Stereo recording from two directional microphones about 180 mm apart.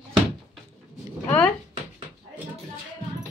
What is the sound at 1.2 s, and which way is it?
Speech, 10° left (ahead or behind).